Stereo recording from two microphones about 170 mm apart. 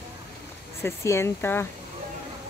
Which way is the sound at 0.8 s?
15° left (ahead or behind).